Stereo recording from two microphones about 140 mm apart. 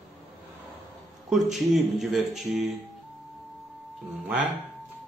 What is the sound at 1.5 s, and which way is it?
Speech, centre (ahead or behind).